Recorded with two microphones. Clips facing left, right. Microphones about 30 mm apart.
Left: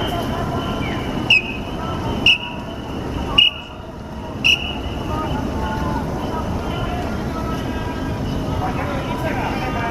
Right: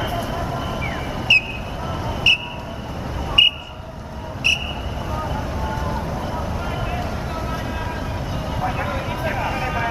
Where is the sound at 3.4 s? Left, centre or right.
Centre.